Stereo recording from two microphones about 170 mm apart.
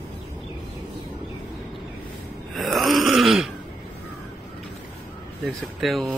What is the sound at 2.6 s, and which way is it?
Groan, centre (ahead or behind).